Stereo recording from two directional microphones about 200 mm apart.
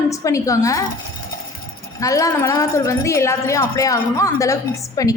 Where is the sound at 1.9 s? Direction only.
15° left (ahead or behind).